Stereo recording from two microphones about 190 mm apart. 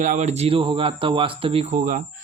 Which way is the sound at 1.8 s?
45° right (ahead or behind).